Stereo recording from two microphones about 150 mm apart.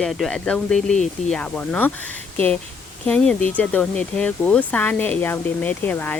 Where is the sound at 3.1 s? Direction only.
10° left (ahead or behind).